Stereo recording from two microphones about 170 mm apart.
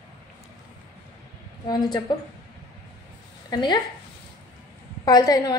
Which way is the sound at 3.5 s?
25° left (ahead or behind).